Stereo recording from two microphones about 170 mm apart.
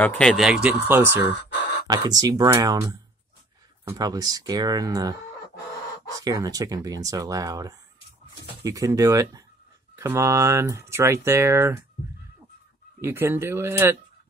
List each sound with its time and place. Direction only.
0.0 s speech: 5° left (ahead or behind); by 1.2 s 10° right (ahead or behind)
1.5 s a sound: 90° left
1.9 s speech: 20° right (ahead or behind)
6.1 s speech: 20° right (ahead or behind)
13.0 s speech: 15° right (ahead or behind)